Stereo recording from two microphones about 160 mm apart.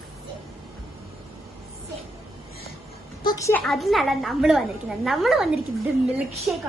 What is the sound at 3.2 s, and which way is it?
Speech, 20° left (ahead or behind).